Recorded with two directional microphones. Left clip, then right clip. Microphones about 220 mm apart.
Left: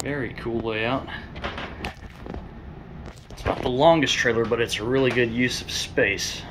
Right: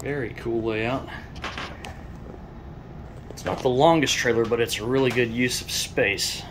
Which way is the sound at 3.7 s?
10° right (ahead or behind).